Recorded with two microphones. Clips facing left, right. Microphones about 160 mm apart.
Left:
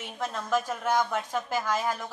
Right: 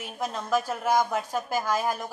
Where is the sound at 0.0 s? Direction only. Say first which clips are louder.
Right 1 dB; 15° right (ahead or behind).